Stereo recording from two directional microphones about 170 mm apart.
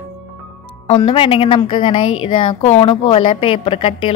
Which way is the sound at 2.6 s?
40° left (ahead or behind).